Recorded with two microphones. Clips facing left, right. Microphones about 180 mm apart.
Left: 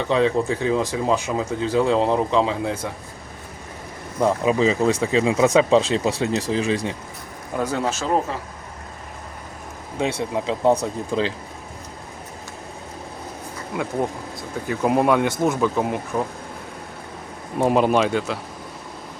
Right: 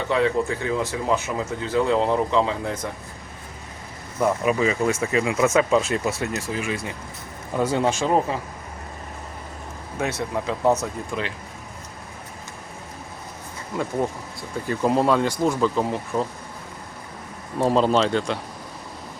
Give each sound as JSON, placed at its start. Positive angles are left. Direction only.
{"t": 0.1, "sound": "speech", "side_deg": 20}
{"t": 4.2, "sound": "speech", "side_deg": 25}
{"t": 6.4, "sound": "speech", "side_deg": 35}
{"t": 7.6, "sound": "speech", "side_deg": -10}
{"t": 10.0, "sound": "speech", "side_deg": 20}
{"t": 10.8, "sound": "speech", "side_deg": 30}
{"t": 14.7, "sound": "speech", "side_deg": 10}
{"t": 17.6, "sound": "speech", "side_deg": 15}